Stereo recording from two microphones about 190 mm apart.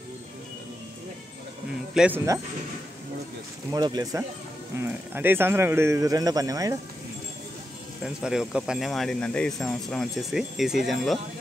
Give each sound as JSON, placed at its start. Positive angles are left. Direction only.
{"t": 2.0, "sound": "speech", "side_deg": -10}
{"t": 3.7, "sound": "speech", "side_deg": -20}
{"t": 8.0, "sound": "speech", "side_deg": -5}